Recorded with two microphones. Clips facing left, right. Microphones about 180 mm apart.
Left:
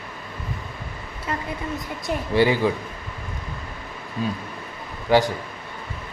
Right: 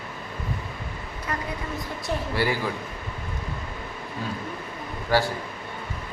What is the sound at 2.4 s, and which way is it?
Speech, 20° left (ahead or behind).